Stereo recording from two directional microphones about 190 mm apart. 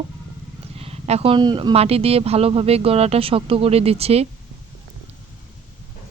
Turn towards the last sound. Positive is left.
turn(degrees=-30)  # may be behind; listen again after turning